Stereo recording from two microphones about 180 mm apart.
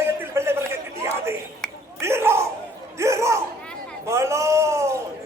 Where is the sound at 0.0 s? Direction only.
15° right (ahead or behind).